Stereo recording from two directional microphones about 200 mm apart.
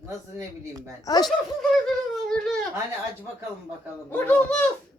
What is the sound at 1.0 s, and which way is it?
Speech, 20° left (ahead or behind).